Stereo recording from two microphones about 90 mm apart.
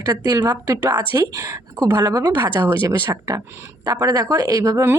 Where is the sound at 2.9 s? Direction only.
35° right (ahead or behind).